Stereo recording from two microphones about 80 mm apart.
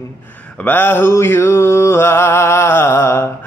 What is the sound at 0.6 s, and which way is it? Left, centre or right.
Mantra, left.